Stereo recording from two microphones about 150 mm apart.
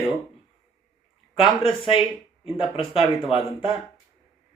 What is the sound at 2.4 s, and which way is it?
Speech, 35° left (ahead or behind).